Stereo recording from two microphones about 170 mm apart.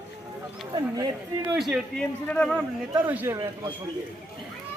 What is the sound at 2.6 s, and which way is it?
Speech, 10° right (ahead or behind).